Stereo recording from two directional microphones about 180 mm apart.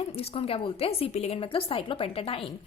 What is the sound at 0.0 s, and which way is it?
A woman's voice, 35° left (ahead or behind).